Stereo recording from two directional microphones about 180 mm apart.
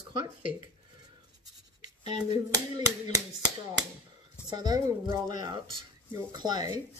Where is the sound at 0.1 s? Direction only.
50° left (ahead or behind).